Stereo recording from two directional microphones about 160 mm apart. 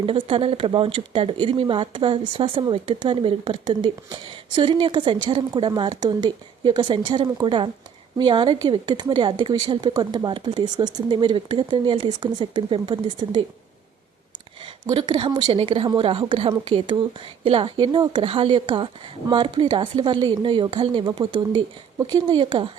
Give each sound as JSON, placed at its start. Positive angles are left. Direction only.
{"t": 0.0, "sound": "a woman's voice", "side_deg": -35}
{"t": 14.6, "sound": "a woman's voice", "side_deg": -30}